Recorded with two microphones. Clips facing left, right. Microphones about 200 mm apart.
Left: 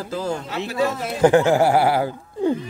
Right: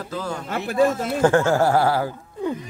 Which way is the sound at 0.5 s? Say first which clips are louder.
Right 5 dB; 50° right (ahead or behind).